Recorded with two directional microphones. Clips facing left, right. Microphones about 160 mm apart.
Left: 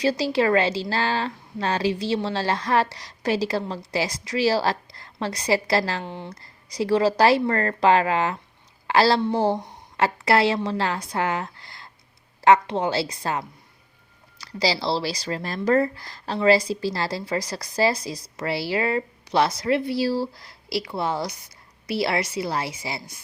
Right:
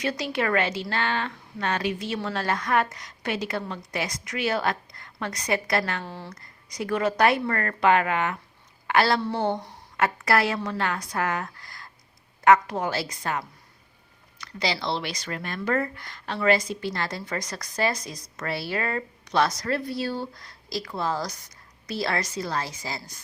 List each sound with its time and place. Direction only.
0.0 s speech: 30° left (ahead or behind)
6.1 s a woman's voice: 20° left (ahead or behind)
6.3 s a woman's voice: 30° left (ahead or behind)